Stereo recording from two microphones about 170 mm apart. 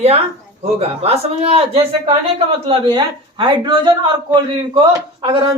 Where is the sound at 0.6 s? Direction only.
35° right (ahead or behind).